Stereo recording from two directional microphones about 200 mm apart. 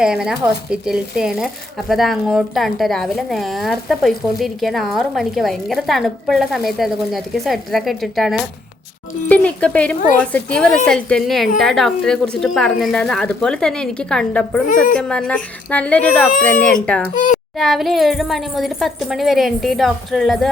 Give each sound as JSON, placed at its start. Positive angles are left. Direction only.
{"t": 0.0, "sound": "a woman's voice", "side_deg": -5}
{"t": 17.2, "sound": "a child's voice", "side_deg": 40}
{"t": 17.6, "sound": "a woman's voice", "side_deg": 0}